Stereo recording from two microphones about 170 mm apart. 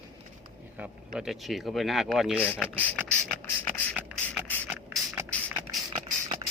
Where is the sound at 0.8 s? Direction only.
5° right (ahead or behind).